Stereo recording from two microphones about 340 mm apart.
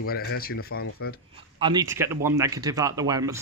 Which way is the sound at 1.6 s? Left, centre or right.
Centre.